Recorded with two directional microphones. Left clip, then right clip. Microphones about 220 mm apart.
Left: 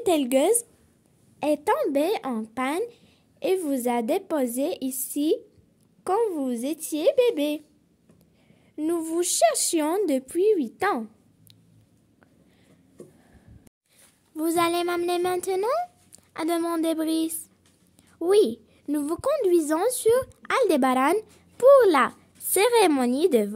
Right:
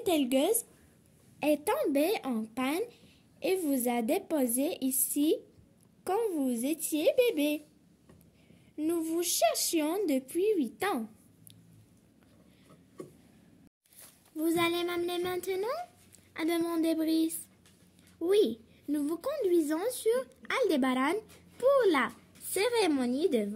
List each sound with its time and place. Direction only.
0.0 s a woman's voice: 35° left (ahead or behind)
8.7 s a woman's voice: 35° left (ahead or behind)
14.3 s a woman's voice: 40° left (ahead or behind)